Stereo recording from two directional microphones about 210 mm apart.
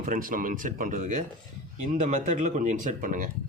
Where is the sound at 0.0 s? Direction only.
40° right (ahead or behind).